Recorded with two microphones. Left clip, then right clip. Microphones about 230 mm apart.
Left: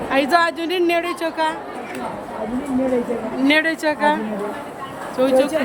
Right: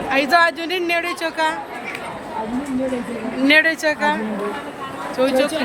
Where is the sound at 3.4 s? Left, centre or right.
Centre.